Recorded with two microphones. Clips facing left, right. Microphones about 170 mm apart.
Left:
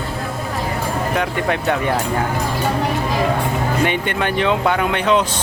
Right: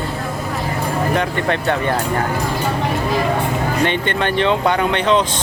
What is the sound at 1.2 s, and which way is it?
Speech, 5° left (ahead or behind).